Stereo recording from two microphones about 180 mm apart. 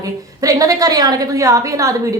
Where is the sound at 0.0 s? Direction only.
20° right (ahead or behind).